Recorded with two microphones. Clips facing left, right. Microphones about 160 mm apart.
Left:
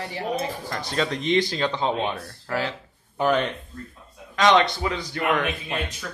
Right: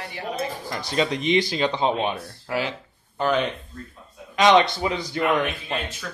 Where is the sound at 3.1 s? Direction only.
5° left (ahead or behind).